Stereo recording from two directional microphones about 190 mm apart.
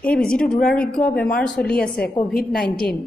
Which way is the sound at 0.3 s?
5° left (ahead or behind).